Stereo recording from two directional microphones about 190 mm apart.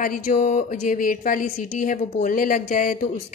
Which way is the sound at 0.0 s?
50° left (ahead or behind).